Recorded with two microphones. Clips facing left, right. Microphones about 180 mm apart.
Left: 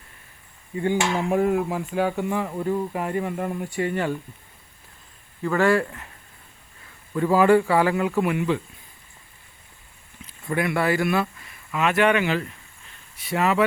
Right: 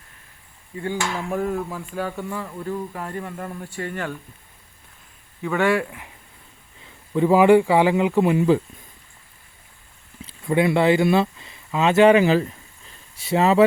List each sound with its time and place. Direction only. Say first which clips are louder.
0.8 s speech: left 4 dB; 15° left (ahead or behind)
5.4 s a man's voice: left 1 dB; centre (ahead or behind)
7.1 s speech: right 3 dB; 20° right (ahead or behind); by 8.6 s 35° right (ahead or behind)
10.2 s speech: right 5 dB; 25° right (ahead or behind)